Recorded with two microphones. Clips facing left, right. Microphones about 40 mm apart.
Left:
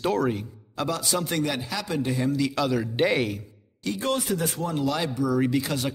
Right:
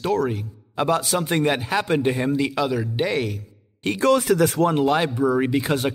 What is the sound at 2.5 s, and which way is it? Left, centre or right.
Speech, centre.